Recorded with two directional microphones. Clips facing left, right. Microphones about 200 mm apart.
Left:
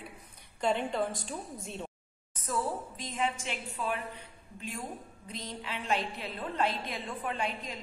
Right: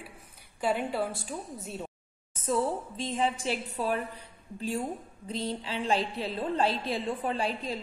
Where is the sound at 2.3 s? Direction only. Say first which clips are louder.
Right 5 dB; 25° right (ahead or behind).